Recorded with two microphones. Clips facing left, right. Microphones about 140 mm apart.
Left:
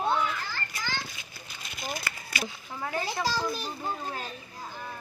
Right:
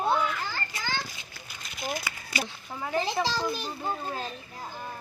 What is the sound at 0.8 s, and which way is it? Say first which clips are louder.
Children playing: left 1 dB; 25° right (ahead or behind).